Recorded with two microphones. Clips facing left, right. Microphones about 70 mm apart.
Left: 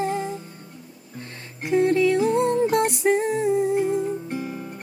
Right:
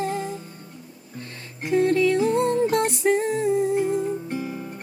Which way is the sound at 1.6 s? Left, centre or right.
Centre.